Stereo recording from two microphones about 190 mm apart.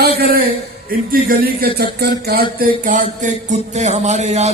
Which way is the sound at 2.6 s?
45° right (ahead or behind).